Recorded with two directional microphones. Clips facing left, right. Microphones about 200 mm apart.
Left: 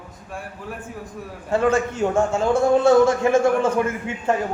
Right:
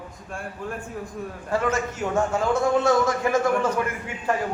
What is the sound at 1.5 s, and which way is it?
A man's voice, 25° left (ahead or behind).